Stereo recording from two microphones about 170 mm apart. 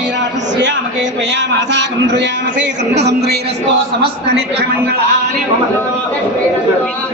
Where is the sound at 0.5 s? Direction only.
90° right.